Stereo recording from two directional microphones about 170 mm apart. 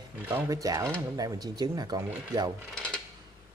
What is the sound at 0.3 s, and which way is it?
Speech, 20° right (ahead or behind).